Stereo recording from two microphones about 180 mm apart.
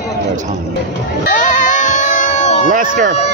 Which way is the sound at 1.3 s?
45° left (ahead or behind).